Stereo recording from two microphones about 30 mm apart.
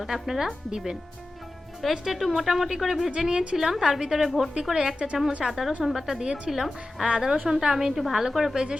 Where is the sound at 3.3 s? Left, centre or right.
Right.